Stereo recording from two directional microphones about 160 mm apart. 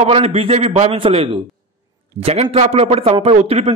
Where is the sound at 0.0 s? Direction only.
40° right (ahead or behind).